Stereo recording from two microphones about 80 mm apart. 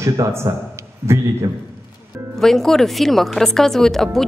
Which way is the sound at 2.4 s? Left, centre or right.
Centre.